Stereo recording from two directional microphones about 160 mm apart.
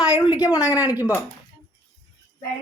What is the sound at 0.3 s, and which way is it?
Speech, 5° right (ahead or behind).